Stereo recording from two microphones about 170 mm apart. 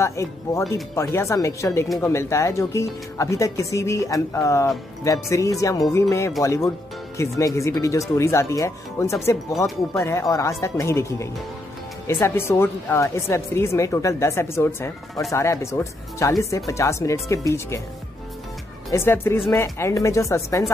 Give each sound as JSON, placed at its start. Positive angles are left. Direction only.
{"t": 0.0, "sound": "speech", "side_deg": 15}
{"t": 18.9, "sound": "speech", "side_deg": 15}